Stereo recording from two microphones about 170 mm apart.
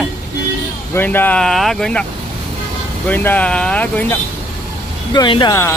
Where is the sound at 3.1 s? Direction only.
10° left (ahead or behind).